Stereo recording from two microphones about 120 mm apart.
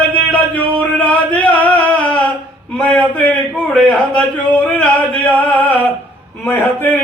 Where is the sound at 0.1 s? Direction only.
15° left (ahead or behind).